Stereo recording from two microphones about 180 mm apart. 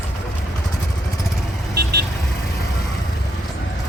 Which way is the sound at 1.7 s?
65° right (ahead or behind).